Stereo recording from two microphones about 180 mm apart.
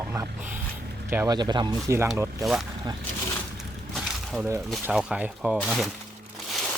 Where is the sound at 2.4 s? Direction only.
Centre (ahead or behind).